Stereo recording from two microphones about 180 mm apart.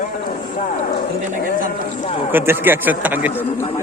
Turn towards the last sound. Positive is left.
turn(degrees=-10)  # may be behind; listen again after turning